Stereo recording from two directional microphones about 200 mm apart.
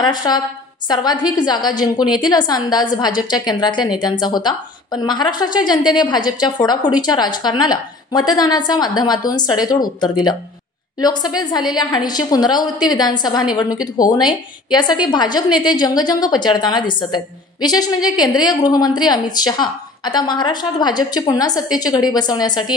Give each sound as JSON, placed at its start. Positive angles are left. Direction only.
{"t": 0.0, "sound": "a woman's voice", "side_deg": 20}